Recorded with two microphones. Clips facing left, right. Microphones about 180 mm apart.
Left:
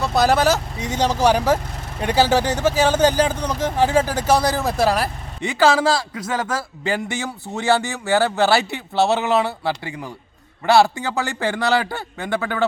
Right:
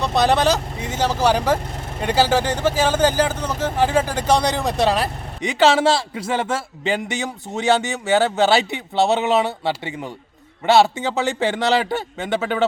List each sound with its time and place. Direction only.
0.0 s speech: centre (ahead or behind)
0.9 s speech: 10° right (ahead or behind)
1.2 s speech: 10° left (ahead or behind)
5.4 s a man's voice: 20° right (ahead or behind)